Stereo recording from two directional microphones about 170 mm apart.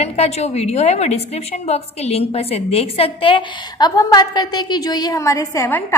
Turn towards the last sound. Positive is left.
turn(degrees=15)  # may be behind; listen again after turning